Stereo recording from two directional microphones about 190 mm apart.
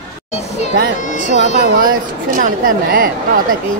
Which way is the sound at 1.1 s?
75° right (ahead or behind).